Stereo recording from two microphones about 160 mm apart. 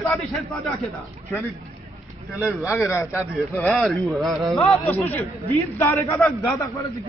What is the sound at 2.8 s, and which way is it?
Speech, 15° left (ahead or behind).